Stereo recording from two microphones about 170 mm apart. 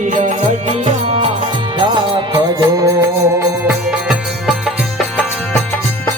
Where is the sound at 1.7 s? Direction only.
25° right (ahead or behind).